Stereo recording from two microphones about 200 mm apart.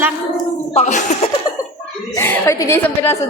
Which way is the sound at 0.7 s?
35° left (ahead or behind).